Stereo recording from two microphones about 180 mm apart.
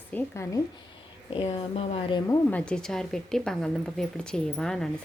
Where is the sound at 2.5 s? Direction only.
5° left (ahead or behind).